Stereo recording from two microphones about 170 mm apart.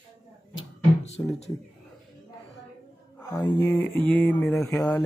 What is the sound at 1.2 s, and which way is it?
Speech, 15° left (ahead or behind).